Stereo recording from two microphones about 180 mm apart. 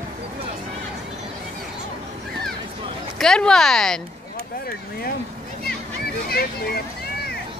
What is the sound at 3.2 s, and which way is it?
Speech, 5° left (ahead or behind).